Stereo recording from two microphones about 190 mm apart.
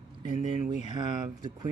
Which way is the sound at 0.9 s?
20° right (ahead or behind).